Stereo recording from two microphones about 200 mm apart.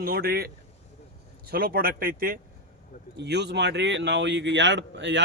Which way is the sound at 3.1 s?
60° right (ahead or behind).